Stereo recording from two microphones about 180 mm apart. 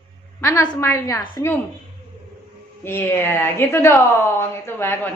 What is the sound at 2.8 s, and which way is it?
Speech, 15° left (ahead or behind).